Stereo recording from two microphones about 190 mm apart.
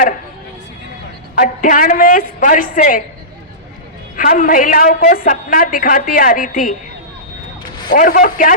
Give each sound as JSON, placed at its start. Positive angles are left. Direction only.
{"t": 1.4, "sound": "a woman's voice", "side_deg": 45}
{"t": 4.2, "sound": "a woman's voice", "side_deg": 45}
{"t": 7.9, "sound": "a woman's voice", "side_deg": 45}